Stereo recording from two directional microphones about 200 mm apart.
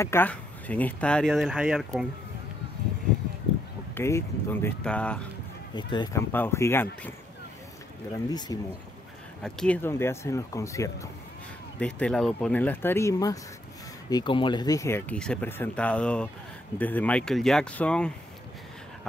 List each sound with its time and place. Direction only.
0.0 s speech: 10° left (ahead or behind)
3.9 s speech: 10° left (ahead or behind)
5.8 s speech: 20° left (ahead or behind)
6.3 s speech: 10° left (ahead or behind)
8.3 s speech: 20° left (ahead or behind)
9.4 s speech: 5° left (ahead or behind)
11.8 s speech: 5° left (ahead or behind)